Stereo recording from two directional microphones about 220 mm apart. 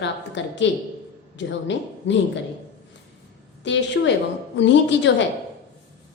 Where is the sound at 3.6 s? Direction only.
55° left (ahead or behind).